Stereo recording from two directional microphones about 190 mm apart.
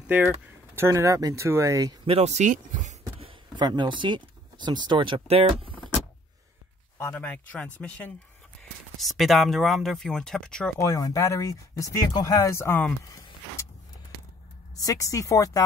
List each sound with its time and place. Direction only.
0.0 s speech: 10° right (ahead or behind)
2.1 s speech: 35° right (ahead or behind)
3.2 s speech: 25° right (ahead or behind)
7.0 s speech: 10° left (ahead or behind)
8.9 s speech: centre (ahead or behind)
10.8 s speech: 15° left (ahead or behind)
14.8 s speech: 15° left (ahead or behind)